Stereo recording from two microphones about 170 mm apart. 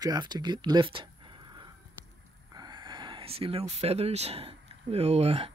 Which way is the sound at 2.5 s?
25° right (ahead or behind).